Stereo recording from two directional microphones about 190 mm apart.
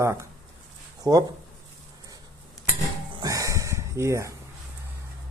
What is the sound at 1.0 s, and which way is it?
Speech, 20° right (ahead or behind).